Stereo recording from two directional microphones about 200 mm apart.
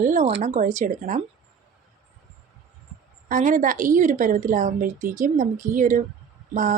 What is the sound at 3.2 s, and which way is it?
Speech, 40° right (ahead or behind).